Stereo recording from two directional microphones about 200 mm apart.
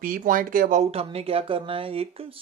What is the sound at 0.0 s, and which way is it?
A man's voice, 45° right (ahead or behind).